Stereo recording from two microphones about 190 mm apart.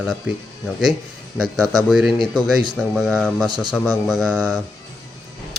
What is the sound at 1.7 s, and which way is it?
A man's voice, centre (ahead or behind).